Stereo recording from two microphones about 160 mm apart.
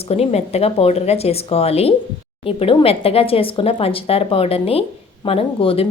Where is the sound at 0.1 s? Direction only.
40° left (ahead or behind).